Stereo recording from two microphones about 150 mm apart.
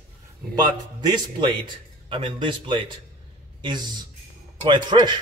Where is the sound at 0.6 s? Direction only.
30° right (ahead or behind).